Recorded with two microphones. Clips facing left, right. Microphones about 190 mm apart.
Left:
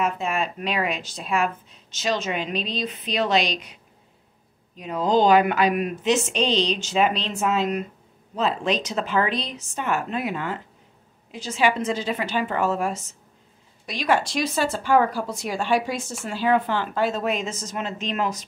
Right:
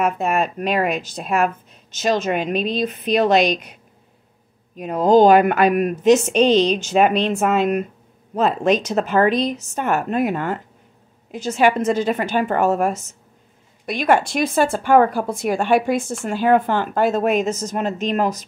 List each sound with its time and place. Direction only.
0.0 s speech: 50° right (ahead or behind)
4.7 s speech: 50° right (ahead or behind)